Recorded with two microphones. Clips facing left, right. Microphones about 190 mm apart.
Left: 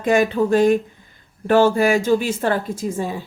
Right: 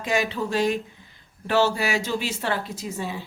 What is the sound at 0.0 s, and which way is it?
A woman's voice, 50° left (ahead or behind).